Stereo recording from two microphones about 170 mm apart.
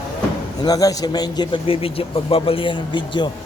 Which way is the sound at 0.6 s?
20° left (ahead or behind).